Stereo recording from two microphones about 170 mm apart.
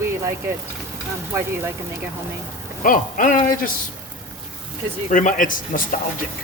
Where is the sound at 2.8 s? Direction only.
50° left (ahead or behind).